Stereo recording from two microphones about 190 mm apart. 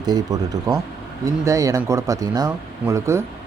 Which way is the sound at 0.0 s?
20° right (ahead or behind).